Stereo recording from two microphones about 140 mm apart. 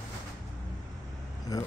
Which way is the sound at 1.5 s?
25° left (ahead or behind).